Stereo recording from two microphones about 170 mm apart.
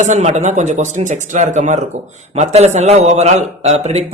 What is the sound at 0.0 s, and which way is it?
A man's voice, 45° right (ahead or behind).